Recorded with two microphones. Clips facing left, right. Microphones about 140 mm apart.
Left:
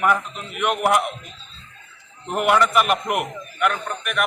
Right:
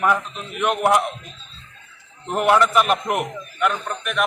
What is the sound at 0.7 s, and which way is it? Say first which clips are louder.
Speech: right 1 dB; 30° right (ahead or behind).